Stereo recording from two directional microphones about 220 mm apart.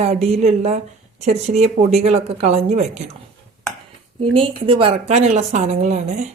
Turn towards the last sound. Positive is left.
turn(degrees=-30)  # may be behind; listen again after turning